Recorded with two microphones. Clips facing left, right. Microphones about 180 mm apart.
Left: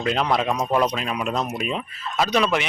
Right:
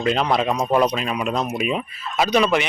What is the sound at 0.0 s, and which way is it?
Speech, centre (ahead or behind).